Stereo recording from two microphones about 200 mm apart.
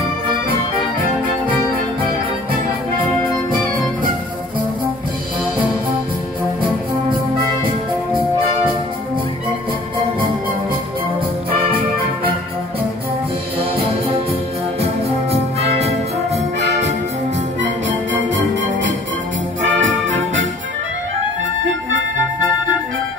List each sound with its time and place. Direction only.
13.6 s music: 30° right (ahead or behind)
19.6 s brass instrument: 70° right (ahead or behind)